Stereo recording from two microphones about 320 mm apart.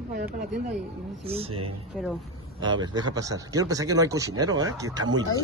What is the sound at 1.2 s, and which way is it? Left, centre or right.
Speech, centre.